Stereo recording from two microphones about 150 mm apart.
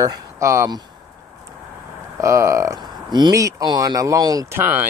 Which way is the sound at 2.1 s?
20° right (ahead or behind).